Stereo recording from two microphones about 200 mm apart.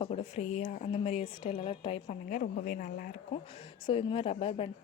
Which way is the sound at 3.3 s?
30° left (ahead or behind).